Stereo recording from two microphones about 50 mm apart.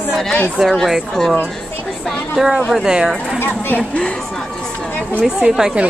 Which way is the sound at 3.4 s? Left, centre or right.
Left.